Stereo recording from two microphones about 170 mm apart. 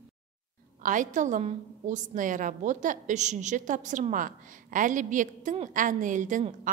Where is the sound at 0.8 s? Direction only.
50° right (ahead or behind).